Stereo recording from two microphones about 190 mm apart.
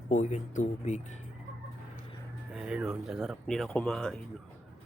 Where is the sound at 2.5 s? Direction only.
5° right (ahead or behind).